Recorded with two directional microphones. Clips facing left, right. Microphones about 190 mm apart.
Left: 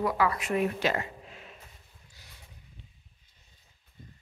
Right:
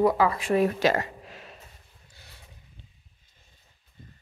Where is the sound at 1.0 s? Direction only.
85° right.